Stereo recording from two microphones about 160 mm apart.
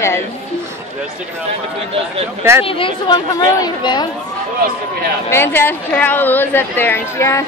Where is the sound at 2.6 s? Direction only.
35° left (ahead or behind).